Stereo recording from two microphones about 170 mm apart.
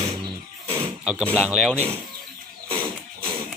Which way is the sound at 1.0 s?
5° right (ahead or behind).